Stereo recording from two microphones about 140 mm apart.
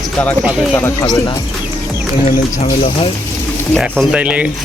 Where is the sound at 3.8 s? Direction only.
5° right (ahead or behind).